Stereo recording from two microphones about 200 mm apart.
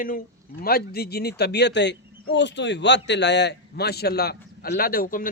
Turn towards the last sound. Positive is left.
turn(degrees=45)  # may be behind; listen again after turning